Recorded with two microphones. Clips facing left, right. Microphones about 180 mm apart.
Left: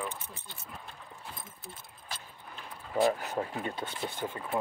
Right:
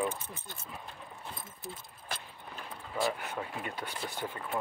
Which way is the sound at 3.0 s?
40° left (ahead or behind).